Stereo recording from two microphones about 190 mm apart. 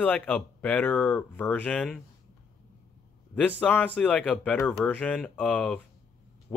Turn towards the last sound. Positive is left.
turn(degrees=10)  # may be behind; listen again after turning